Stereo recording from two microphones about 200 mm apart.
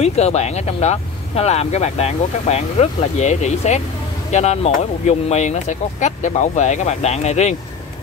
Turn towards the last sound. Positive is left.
turn(degrees=35)  # may be behind; listen again after turning